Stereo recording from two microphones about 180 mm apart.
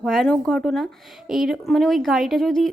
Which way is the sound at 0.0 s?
Centre (ahead or behind).